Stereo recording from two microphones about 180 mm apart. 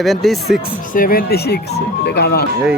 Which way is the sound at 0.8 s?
50° left (ahead or behind).